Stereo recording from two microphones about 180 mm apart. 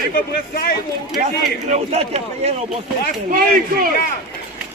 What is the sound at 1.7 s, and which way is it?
Speech, 35° right (ahead or behind).